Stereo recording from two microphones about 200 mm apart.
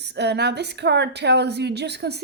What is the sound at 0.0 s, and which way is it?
A woman's voice, 55° right (ahead or behind).